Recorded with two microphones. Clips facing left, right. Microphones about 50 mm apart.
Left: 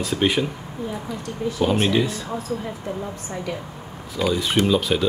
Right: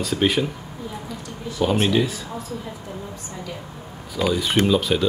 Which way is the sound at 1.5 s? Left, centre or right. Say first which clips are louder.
Right 1 dB; centre.